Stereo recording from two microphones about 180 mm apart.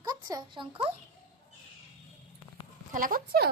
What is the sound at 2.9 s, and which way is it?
Speech, 50° right (ahead or behind).